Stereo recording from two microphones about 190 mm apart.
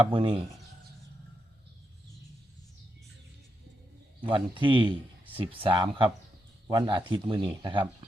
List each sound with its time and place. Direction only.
0.1 s speech: 25° right (ahead or behind)
4.3 s speech: 25° right (ahead or behind)